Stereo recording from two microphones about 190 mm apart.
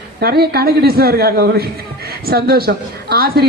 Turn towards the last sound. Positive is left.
turn(degrees=-55)  # may be behind; listen again after turning